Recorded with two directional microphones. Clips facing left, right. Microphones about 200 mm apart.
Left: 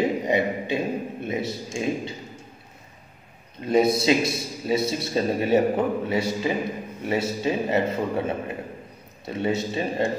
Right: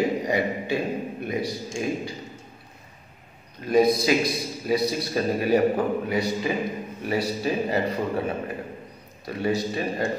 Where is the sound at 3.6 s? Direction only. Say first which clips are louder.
Even; 25° left (ahead or behind).